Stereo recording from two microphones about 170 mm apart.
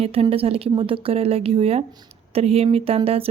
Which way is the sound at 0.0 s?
35° right (ahead or behind).